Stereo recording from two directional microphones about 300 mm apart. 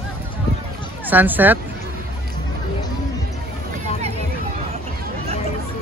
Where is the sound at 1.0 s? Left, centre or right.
Centre.